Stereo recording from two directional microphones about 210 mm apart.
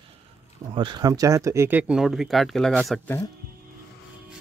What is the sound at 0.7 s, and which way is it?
Speech, 20° right (ahead or behind).